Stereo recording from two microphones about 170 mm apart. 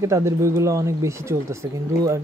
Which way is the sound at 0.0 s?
15° right (ahead or behind).